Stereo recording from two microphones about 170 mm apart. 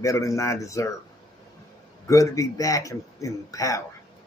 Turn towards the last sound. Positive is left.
turn(degrees=20)  # may be behind; listen again after turning